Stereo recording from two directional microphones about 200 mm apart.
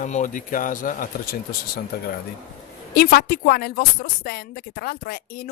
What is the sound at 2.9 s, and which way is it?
Speech, 50° left (ahead or behind).